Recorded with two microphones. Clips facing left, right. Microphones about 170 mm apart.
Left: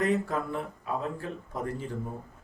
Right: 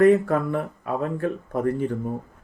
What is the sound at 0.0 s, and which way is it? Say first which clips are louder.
Speech: right 11 dB; 60° right (ahead or behind).